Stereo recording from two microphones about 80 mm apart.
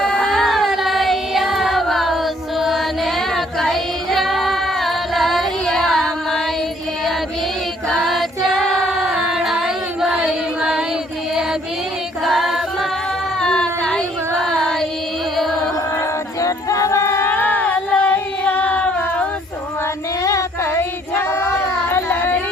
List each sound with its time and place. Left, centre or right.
0.0 s a sound: centre
7.9 s singing: centre
12.2 s choir: centre
13.4 s a sound: centre
14.5 s carnatic music: centre
15.4 s music: centre
16.0 s a capella: left; by 19.3 s centre
20.2 s music: left
21.2 s a sound: left